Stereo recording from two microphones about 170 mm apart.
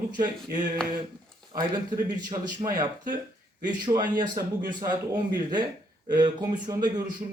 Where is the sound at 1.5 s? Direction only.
25° right (ahead or behind).